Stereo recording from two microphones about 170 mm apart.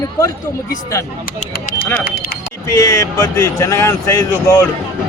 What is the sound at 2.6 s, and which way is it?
Speech, 20° left (ahead or behind).